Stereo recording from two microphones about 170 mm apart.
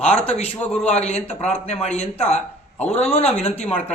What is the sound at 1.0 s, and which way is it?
Speech, 40° left (ahead or behind).